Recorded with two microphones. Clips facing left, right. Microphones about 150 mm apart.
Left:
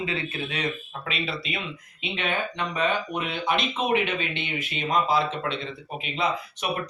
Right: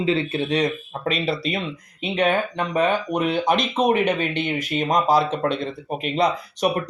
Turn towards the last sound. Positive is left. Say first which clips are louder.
# right 7 dB
turn(degrees=-40)  # may be behind; listen again after turning